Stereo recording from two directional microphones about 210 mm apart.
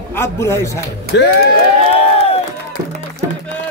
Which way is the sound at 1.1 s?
55° left (ahead or behind).